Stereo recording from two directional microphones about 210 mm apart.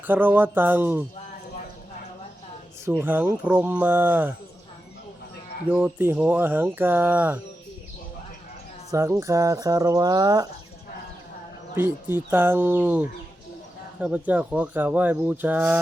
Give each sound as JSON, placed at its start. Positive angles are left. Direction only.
{"t": 0.1, "sound": "speech", "side_deg": -10}
{"t": 2.8, "sound": "speech", "side_deg": -10}
{"t": 5.7, "sound": "speech", "side_deg": -10}
{"t": 8.9, "sound": "speech", "side_deg": -15}
{"t": 11.7, "sound": "speech", "side_deg": -10}